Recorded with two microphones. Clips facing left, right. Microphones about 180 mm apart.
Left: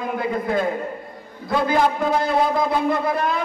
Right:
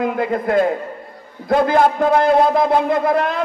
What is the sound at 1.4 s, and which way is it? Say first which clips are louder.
A man's voice: right 5 dB; 55° right (ahead or behind).